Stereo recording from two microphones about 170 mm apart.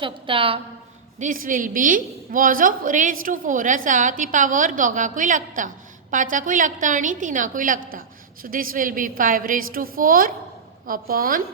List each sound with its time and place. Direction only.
0.0 s a woman's voice: 30° right (ahead or behind)
1.2 s a woman's voice: 50° right (ahead or behind)